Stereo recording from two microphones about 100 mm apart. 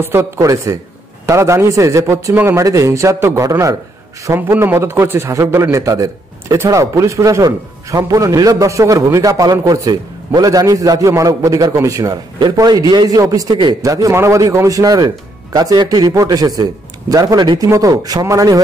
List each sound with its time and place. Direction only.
0.0 s a man's voice: 25° right (ahead or behind)